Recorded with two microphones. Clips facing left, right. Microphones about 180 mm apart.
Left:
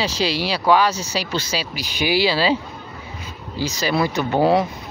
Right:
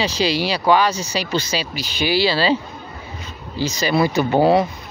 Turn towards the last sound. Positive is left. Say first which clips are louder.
# right 2 dB
turn(degrees=0)  # may be behind; listen again after turning